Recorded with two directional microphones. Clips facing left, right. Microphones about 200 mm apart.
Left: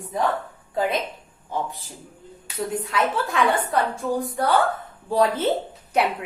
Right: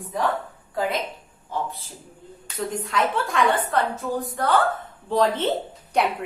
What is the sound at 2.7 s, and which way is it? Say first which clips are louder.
A woman's voice: even; 5° left (ahead or behind).